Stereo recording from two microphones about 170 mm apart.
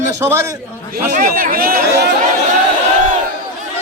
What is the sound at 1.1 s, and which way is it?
Speech, 55° right (ahead or behind).